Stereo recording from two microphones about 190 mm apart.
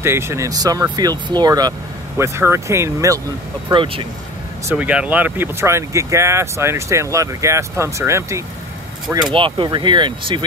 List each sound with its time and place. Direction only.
0.0 s speech: 15° right (ahead or behind)
3.6 s speech: 25° right (ahead or behind)
4.6 s speech: 5° right (ahead or behind)
9.3 s speech: 25° right (ahead or behind)